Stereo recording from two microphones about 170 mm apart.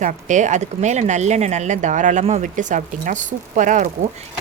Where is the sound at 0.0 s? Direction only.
45° right (ahead or behind).